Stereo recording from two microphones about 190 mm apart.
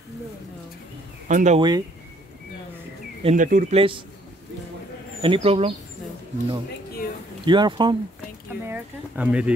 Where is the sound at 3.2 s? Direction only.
40° right (ahead or behind).